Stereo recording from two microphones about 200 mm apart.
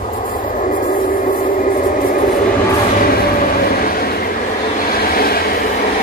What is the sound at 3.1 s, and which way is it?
Vehicle, 45° left (ahead or behind).